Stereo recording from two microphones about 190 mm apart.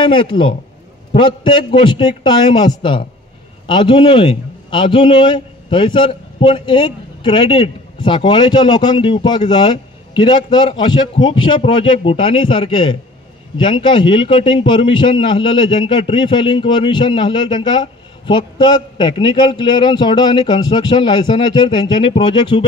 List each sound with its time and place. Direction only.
0.0 s a man's voice: 25° left (ahead or behind)